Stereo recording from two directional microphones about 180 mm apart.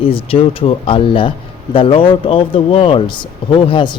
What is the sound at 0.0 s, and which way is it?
Speech, 30° left (ahead or behind).